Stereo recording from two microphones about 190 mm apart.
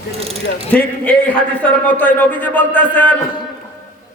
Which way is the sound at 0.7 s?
5° left (ahead or behind).